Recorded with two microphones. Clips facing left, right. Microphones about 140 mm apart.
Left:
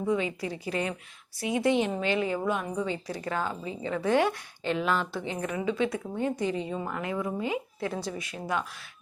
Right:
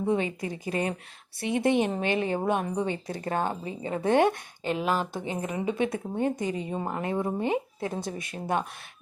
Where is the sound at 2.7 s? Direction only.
55° right (ahead or behind).